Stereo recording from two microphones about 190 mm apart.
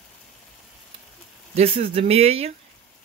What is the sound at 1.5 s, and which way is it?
Speech, 30° right (ahead or behind).